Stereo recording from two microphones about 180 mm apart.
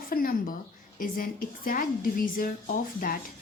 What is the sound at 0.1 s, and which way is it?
A woman's voice, 55° left (ahead or behind).